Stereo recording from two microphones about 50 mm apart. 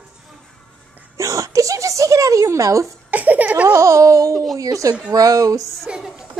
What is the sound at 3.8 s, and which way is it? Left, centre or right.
Speech, right.